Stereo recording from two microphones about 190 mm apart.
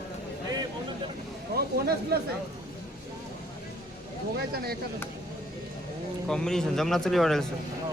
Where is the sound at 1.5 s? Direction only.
55° right (ahead or behind).